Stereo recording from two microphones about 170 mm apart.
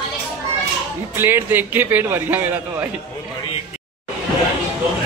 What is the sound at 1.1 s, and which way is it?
A man's voice, 15° right (ahead or behind).